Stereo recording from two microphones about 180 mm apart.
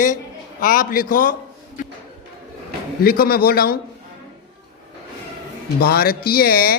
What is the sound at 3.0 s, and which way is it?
Speech, 55° left (ahead or behind).